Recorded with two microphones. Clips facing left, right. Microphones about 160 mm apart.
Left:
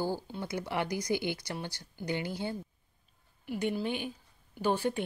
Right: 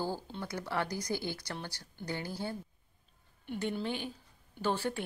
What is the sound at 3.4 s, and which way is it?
Speech, 10° left (ahead or behind).